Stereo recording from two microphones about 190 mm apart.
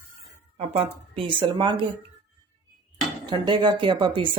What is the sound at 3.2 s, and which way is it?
Speech, 25° right (ahead or behind).